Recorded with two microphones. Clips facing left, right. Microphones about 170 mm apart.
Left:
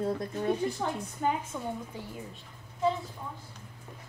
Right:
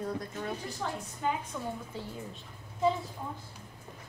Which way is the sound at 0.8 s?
40° left (ahead or behind).